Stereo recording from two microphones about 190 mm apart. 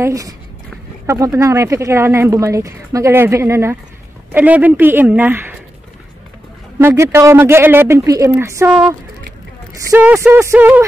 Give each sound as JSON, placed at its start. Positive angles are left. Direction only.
{"t": 0.0, "sound": "speech", "side_deg": -15}
{"t": 6.8, "sound": "speech", "side_deg": -15}
{"t": 9.8, "sound": "speech", "side_deg": -15}